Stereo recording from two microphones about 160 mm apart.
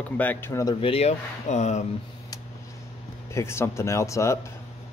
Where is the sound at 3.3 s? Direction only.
15° left (ahead or behind).